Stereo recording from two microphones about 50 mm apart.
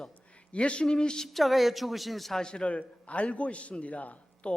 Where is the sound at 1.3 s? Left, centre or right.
Centre.